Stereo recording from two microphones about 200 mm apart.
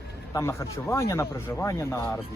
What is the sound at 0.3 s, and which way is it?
Speech, 15° left (ahead or behind).